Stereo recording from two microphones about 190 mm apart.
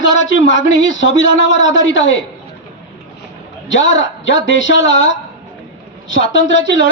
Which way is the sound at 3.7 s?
75° left (ahead or behind).